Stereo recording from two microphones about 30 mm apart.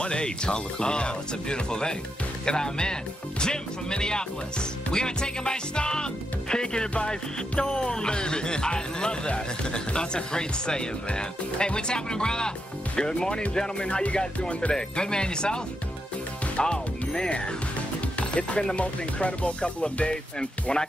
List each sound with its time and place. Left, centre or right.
0.0 s speech: left
13.6 s music: left
14.1 s speech: left
18.2 s music: left